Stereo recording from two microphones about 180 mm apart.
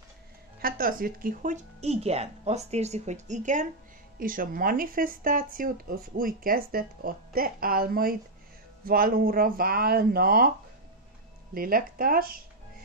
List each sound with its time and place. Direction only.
0.6 s speech: 50° right (ahead or behind)
11.5 s speech: 55° right (ahead or behind)